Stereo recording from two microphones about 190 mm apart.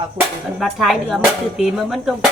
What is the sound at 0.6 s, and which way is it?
Speech, centre (ahead or behind).